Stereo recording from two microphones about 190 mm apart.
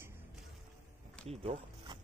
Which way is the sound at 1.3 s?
30° right (ahead or behind).